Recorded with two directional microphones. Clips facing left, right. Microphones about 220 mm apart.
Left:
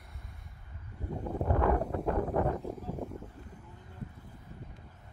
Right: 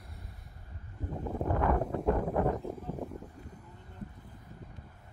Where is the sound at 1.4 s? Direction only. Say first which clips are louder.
Even; 5° right (ahead or behind).